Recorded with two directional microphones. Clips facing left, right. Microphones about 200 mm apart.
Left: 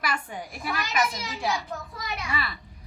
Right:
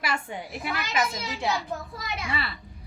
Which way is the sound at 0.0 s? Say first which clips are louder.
Right 1 dB; 25° right (ahead or behind).